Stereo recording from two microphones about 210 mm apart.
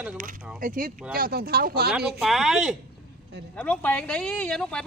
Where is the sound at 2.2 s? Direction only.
Centre (ahead or behind).